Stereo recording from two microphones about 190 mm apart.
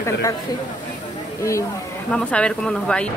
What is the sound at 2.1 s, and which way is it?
Speech, 5° left (ahead or behind).